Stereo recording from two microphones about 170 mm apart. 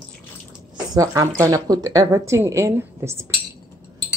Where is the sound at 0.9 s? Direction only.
20° right (ahead or behind).